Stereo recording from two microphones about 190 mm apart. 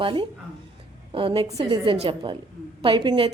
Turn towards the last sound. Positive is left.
turn(degrees=-25)  # may be behind; listen again after turning